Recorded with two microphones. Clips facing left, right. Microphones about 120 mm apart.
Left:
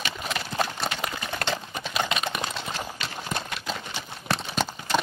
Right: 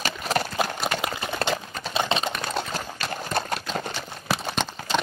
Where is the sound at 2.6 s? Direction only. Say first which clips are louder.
Right 4 dB; 45° right (ahead or behind).